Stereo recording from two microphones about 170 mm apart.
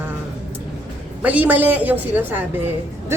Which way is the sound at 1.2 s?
10° right (ahead or behind).